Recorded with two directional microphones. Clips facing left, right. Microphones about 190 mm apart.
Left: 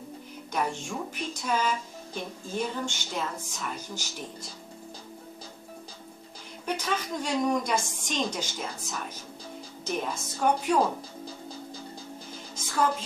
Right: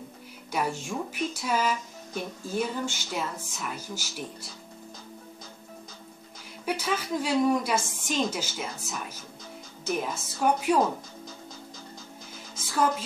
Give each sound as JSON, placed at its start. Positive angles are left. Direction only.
{"t": 0.5, "sound": "a woman's voice", "side_deg": -5}
{"t": 6.6, "sound": "a woman's voice", "side_deg": -5}